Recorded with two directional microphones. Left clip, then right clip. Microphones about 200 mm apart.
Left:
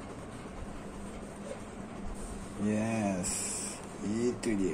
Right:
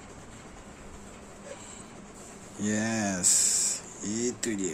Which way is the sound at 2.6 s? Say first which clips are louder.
Right 3 dB; 35° right (ahead or behind).